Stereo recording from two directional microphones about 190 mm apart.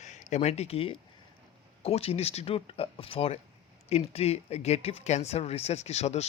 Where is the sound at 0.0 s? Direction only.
40° left (ahead or behind).